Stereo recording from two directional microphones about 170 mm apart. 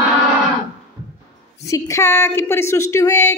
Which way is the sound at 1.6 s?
20° left (ahead or behind).